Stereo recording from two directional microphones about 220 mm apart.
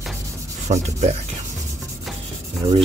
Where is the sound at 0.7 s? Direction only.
30° right (ahead or behind).